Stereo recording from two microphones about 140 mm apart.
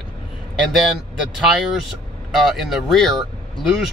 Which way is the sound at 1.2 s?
Centre (ahead or behind).